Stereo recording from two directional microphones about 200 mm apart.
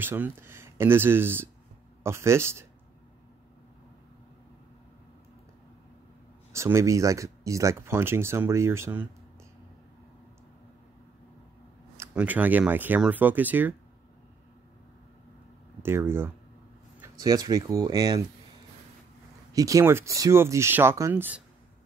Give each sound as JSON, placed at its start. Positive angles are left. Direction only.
{"t": 0.0, "sound": "speech", "side_deg": -10}
{"t": 6.5, "sound": "speech", "side_deg": -15}
{"t": 12.0, "sound": "speech", "side_deg": -5}
{"t": 15.8, "sound": "speech", "side_deg": -10}
{"t": 19.5, "sound": "speech", "side_deg": -15}